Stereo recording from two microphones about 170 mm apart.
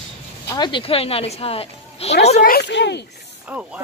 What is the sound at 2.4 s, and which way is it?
Speech, 75° left (ahead or behind).